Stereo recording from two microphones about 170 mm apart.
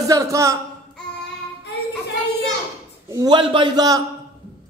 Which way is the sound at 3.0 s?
25° right (ahead or behind).